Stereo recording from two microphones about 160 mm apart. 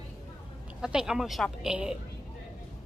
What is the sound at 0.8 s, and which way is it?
A woman's voice, 5° right (ahead or behind).